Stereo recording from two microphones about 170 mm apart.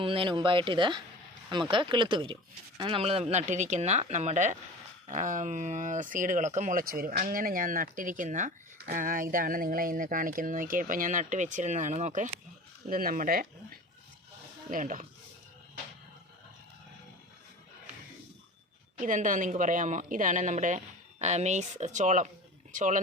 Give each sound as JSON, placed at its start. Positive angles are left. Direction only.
{"t": 0.0, "sound": "speech", "side_deg": -30}
{"t": 12.9, "sound": "speech", "side_deg": -55}
{"t": 14.7, "sound": "speech", "side_deg": -50}
{"t": 18.9, "sound": "speech", "side_deg": -50}